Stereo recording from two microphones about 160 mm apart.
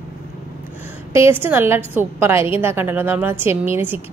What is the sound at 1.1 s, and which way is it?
A woman's voice, 15° right (ahead or behind).